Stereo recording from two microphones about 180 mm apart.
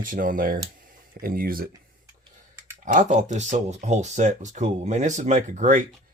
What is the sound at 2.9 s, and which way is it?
Speech, 45° right (ahead or behind).